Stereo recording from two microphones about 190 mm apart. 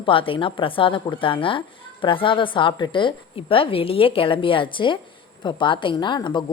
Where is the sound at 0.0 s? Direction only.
25° left (ahead or behind).